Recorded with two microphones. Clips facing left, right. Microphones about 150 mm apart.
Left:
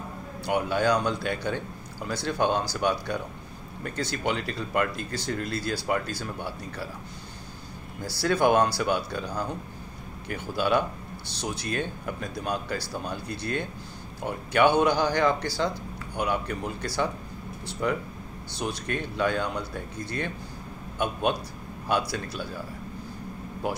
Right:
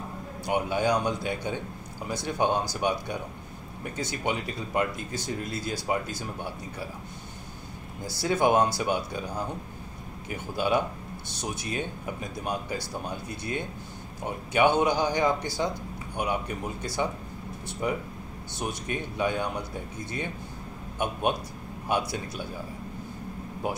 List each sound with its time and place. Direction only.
0.5 s speech: 20° right (ahead or behind)
8.0 s speech: 20° right (ahead or behind)
18.6 s speech: 20° right (ahead or behind)